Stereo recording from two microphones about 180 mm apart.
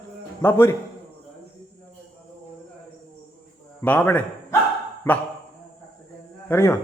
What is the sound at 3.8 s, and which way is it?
A man's voice, 10° left (ahead or behind).